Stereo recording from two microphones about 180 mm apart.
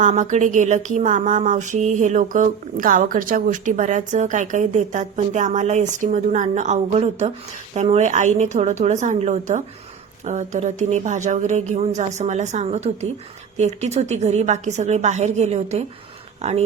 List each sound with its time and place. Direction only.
0.0 s a woman's voice: 45° right (ahead or behind)